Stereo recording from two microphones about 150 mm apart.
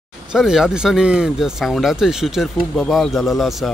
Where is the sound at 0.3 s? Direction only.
5° right (ahead or behind).